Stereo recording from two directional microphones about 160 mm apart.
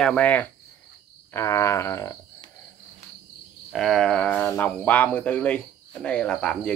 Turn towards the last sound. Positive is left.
turn(degrees=5)  # may be behind; listen again after turning